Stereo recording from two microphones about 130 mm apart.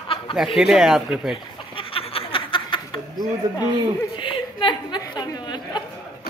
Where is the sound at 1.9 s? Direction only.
45° left (ahead or behind).